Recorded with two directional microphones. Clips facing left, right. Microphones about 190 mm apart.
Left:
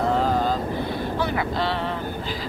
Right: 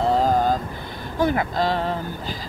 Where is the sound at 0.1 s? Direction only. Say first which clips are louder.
Right 2 dB; 40° right (ahead or behind).